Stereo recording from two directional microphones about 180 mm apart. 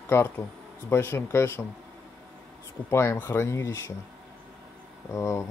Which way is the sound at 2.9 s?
15° left (ahead or behind).